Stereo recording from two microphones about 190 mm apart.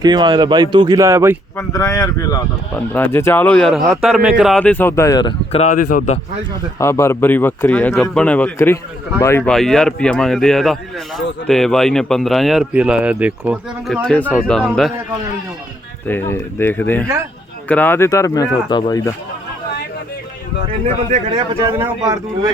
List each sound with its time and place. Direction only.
0.0 s speech: 20° right (ahead or behind)
1.5 s speech: 15° left (ahead or behind)
5.5 s speech: 35° left (ahead or behind)
6.7 s speech: 15° left (ahead or behind)
16.0 s speech: 10° left (ahead or behind)
21.1 s a man's voice: 35° right (ahead or behind)
21.6 s speech: 20° right (ahead or behind)